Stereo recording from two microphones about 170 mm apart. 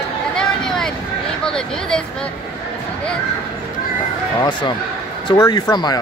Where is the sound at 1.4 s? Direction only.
5° left (ahead or behind).